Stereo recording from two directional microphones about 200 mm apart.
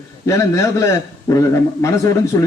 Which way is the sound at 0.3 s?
15° left (ahead or behind).